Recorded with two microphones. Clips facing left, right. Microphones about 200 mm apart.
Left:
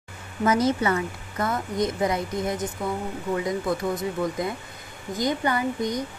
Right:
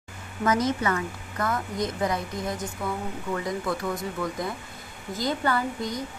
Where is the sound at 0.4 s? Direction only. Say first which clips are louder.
Left 3 dB; 30° left (ahead or behind).